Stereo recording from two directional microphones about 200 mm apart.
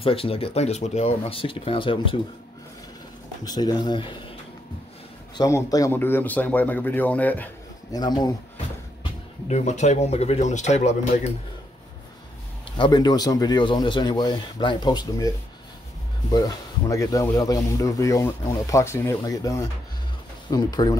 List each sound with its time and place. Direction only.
0.0 s speech: 30° left (ahead or behind)
3.4 s speech: 20° left (ahead or behind)
5.4 s speech: 15° left (ahead or behind)
7.9 s speech: 20° left (ahead or behind)
9.5 s speech: 35° left (ahead or behind)
12.7 s speech: 25° left (ahead or behind)